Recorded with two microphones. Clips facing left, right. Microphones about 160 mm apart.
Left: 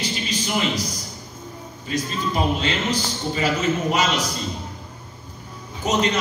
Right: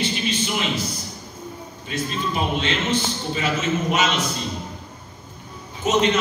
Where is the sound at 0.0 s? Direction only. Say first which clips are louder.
Right 3 dB; 40° left (ahead or behind).